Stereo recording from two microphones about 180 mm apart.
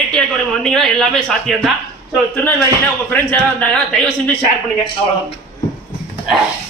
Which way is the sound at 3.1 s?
10° left (ahead or behind).